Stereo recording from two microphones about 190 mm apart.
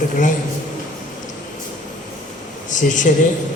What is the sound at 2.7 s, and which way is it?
Speech, 40° left (ahead or behind).